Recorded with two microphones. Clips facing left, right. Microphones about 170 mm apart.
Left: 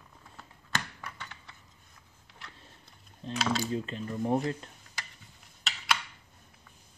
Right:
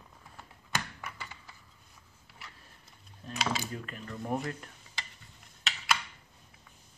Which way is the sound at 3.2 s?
30° left (ahead or behind).